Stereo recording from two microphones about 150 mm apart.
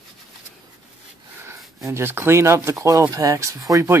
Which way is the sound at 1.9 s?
15° right (ahead or behind).